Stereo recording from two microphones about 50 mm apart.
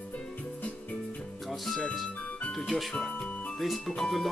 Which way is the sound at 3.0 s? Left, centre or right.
Left.